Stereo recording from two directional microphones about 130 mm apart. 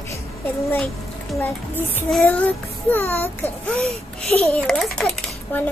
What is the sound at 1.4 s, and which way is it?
A child's voice, 15° left (ahead or behind).